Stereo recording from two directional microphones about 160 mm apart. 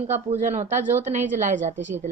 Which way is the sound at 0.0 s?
45° right (ahead or behind).